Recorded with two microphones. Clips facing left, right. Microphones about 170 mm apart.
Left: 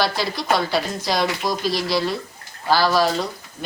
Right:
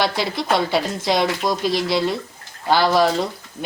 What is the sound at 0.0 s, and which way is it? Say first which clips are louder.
Speech: right 1 dB; 20° right (ahead or behind).